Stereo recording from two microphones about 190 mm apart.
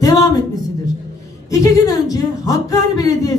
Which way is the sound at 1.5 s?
20° left (ahead or behind).